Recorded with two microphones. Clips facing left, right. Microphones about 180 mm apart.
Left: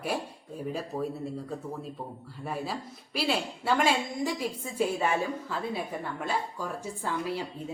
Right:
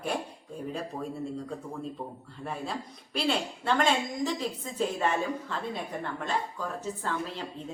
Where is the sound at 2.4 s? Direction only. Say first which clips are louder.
Left 1 dB; 5° left (ahead or behind).